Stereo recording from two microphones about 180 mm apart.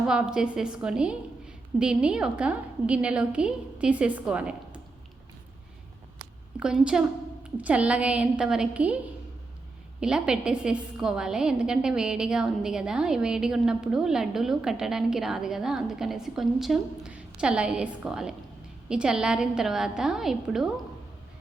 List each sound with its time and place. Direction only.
0.1 s a woman's voice: 5° right (ahead or behind)
6.6 s a woman's voice: 5° right (ahead or behind)
10.0 s a woman's voice: 5° right (ahead or behind)